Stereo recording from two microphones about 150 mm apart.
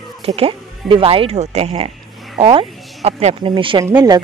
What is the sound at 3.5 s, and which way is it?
Speech, 35° right (ahead or behind).